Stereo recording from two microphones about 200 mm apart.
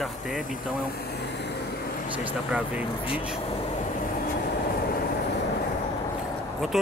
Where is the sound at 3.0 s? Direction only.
25° left (ahead or behind).